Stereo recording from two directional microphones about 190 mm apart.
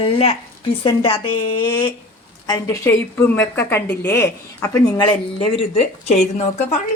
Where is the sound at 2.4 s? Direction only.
15° left (ahead or behind).